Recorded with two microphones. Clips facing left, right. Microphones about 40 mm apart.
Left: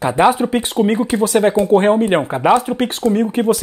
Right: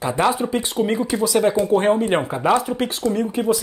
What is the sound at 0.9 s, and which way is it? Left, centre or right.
Speech, left.